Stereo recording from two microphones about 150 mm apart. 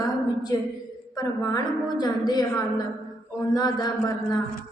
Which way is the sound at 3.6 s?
25° left (ahead or behind).